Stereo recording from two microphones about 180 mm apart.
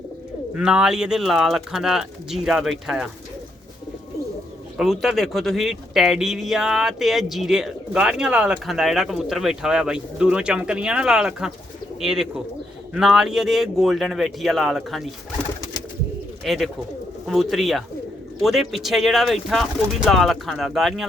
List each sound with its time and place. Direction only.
0.5 s speech: 5° right (ahead or behind)
4.8 s speech: centre (ahead or behind)
16.4 s speech: centre (ahead or behind)